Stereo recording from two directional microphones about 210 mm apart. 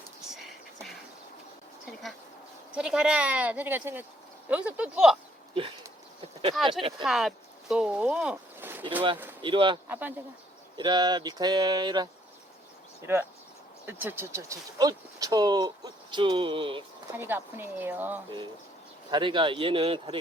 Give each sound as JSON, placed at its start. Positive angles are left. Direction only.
{"t": 0.3, "sound": "a sound", "side_deg": 0}
{"t": 1.9, "sound": "bee", "side_deg": 0}
{"t": 2.7, "sound": "speech", "side_deg": -5}
{"t": 6.6, "sound": "speech", "side_deg": 0}
{"t": 9.4, "sound": "speech", "side_deg": -25}
{"t": 9.9, "sound": "speech", "side_deg": -10}
{"t": 10.8, "sound": "speech", "side_deg": -20}
{"t": 17.2, "sound": "speech", "side_deg": -10}
{"t": 19.1, "sound": "speech", "side_deg": -25}